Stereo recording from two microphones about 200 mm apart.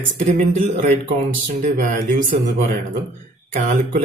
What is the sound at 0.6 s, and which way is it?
Speech, 45° right (ahead or behind).